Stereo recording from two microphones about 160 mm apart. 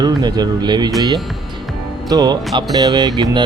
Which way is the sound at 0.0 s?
25° right (ahead or behind).